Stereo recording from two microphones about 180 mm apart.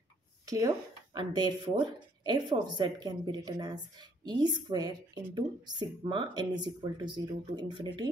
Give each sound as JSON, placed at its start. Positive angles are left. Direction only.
{"t": 0.5, "sound": "speech", "side_deg": -20}